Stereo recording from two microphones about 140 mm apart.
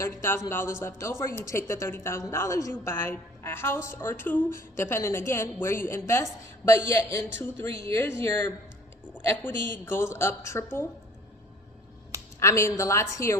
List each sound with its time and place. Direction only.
0.0 s a woman's voice: 20° left (ahead or behind)
12.4 s a woman's voice: 20° left (ahead or behind)